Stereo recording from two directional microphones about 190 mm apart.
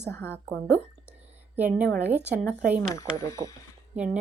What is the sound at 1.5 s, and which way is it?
Speech, 10° right (ahead or behind).